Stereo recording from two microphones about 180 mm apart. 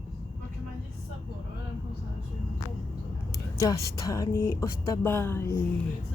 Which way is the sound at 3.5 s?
20° left (ahead or behind).